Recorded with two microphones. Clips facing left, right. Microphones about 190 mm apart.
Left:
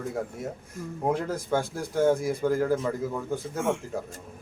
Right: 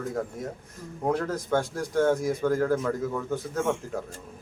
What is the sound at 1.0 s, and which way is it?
Speech, 10° left (ahead or behind).